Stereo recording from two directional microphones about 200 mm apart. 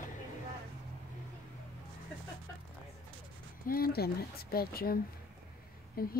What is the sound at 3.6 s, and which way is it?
A woman's voice, 50° left (ahead or behind).